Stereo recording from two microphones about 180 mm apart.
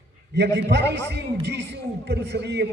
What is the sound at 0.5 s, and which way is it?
A man's voice, 70° right (ahead or behind).